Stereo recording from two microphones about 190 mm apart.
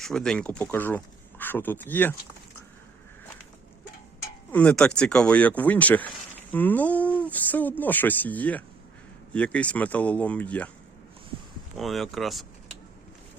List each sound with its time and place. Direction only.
0.0 s speech: 5° left (ahead or behind)
4.5 s speech: 5° left (ahead or behind)
11.8 s speech: centre (ahead or behind)